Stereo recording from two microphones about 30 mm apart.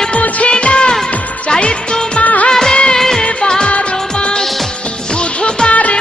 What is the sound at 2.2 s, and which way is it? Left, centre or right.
Music of bollywood, left.